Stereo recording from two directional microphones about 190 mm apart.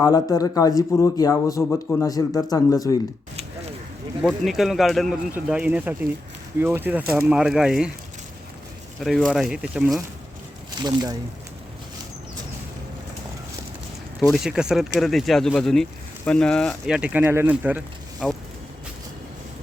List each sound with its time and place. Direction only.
0.0 s speech: 20° left (ahead or behind)
4.2 s speech: centre (ahead or behind)
9.0 s speech: centre (ahead or behind)
10.8 s speech: 20° right (ahead or behind)
14.3 s speech: 5° right (ahead or behind)